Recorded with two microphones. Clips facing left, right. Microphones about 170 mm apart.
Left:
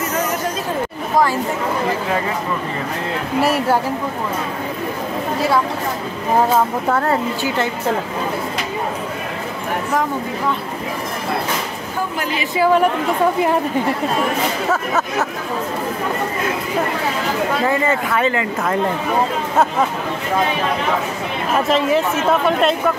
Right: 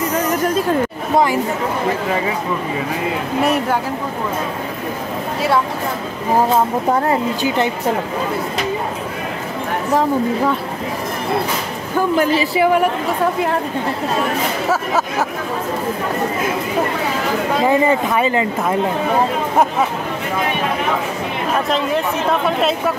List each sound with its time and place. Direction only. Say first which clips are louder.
6.9 s speech: right 1 dB; 15° right (ahead or behind)
12.2 s speech: right 9 dB; 40° right (ahead or behind)
14.7 s speech: right 1 dB; 10° right (ahead or behind)
17.6 s speech: right 3 dB; 15° right (ahead or behind)
21.5 s speech: left 3 dB; centre (ahead or behind)